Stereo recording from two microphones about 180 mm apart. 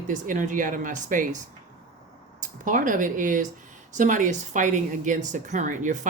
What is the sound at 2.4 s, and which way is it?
Speech, 45° right (ahead or behind).